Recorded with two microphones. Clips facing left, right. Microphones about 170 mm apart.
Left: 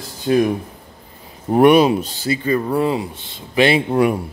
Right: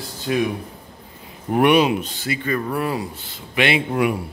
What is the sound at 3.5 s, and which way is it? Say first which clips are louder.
Speech: left 5 dB; 35° left (ahead or behind).